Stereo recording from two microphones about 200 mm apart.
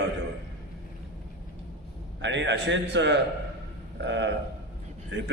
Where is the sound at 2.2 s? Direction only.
65° right (ahead or behind).